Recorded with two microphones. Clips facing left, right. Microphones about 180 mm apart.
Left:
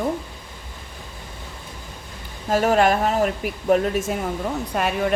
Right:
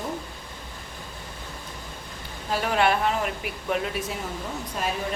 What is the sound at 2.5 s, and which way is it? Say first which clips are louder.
Speech: left 6 dB; 45° left (ahead or behind).